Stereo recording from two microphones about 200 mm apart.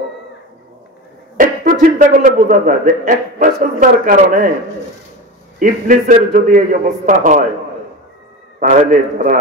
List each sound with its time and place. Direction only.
1.3 s a man's voice: 40° right (ahead or behind)
5.6 s a man's voice: 40° right (ahead or behind)
8.5 s a man's voice: 40° right (ahead or behind)